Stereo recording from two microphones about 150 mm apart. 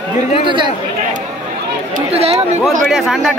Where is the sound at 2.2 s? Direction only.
40° right (ahead or behind).